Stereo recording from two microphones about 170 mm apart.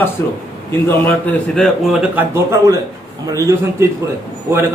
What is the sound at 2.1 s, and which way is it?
A man's voice, 15° right (ahead or behind).